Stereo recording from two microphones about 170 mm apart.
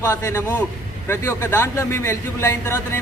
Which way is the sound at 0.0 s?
15° left (ahead or behind).